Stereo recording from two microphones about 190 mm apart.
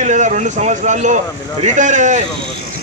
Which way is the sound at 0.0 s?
40° right (ahead or behind).